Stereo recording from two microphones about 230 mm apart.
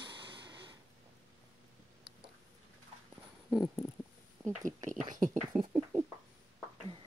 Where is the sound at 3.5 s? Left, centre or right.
Centre.